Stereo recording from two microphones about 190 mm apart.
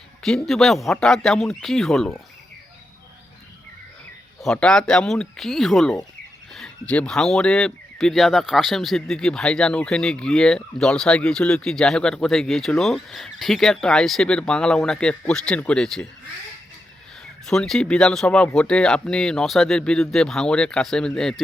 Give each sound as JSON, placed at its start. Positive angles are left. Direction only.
{"t": 0.2, "sound": "speech", "side_deg": 0}
{"t": 4.4, "sound": "speech", "side_deg": 5}
{"t": 17.4, "sound": "speech", "side_deg": 5}